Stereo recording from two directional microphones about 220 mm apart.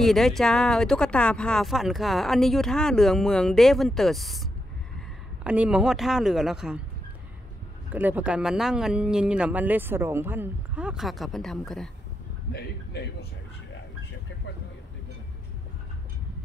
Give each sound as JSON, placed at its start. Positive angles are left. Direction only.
{"t": 0.0, "sound": "speech", "side_deg": 0}
{"t": 7.9, "sound": "speech", "side_deg": -5}
{"t": 12.5, "sound": "a man's voice", "side_deg": 45}